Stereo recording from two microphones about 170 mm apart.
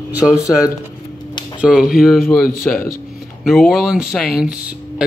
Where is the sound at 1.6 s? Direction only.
5° right (ahead or behind).